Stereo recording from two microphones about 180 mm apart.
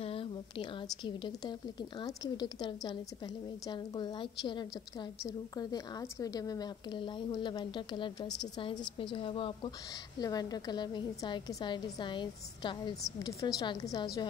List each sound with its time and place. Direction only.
0.0 s a woman's voice: 30° left (ahead or behind)